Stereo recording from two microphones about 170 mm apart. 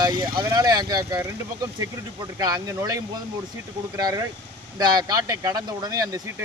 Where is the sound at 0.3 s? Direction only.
25° right (ahead or behind).